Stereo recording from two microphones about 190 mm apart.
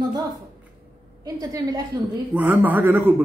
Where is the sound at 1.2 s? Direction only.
20° right (ahead or behind).